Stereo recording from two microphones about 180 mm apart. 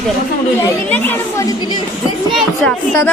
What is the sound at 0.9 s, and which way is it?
A woman's voice, 10° left (ahead or behind).